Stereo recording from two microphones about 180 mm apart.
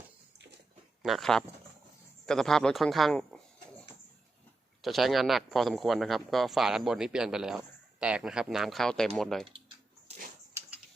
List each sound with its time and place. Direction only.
1.0 s speech: centre (ahead or behind)
2.2 s a sound: 5° left (ahead or behind)
4.8 s speech: centre (ahead or behind)